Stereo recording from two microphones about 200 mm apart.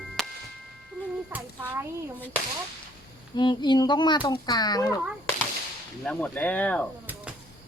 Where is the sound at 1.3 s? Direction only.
10° right (ahead or behind).